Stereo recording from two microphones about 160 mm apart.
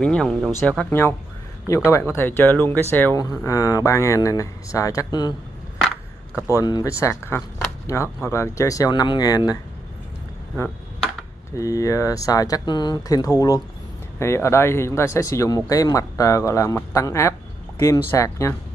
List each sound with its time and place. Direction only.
0.0 s speech: 5° left (ahead or behind)
0.5 s speech: 15° left (ahead or behind)
6.5 s speech: 20° left (ahead or behind)
11.5 s speech: 20° left (ahead or behind)